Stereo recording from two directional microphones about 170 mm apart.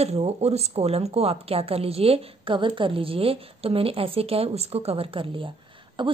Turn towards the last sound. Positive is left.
turn(degrees=-30)  # may be behind; listen again after turning